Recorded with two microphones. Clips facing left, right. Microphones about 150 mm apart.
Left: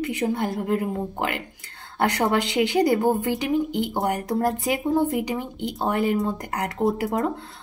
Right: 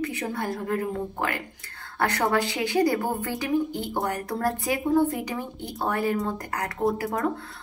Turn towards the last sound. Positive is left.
turn(degrees=20)  # may be behind; listen again after turning